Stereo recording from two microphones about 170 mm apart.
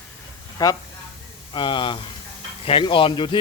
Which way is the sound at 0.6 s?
20° left (ahead or behind).